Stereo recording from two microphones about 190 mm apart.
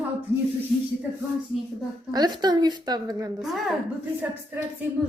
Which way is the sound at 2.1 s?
20° right (ahead or behind).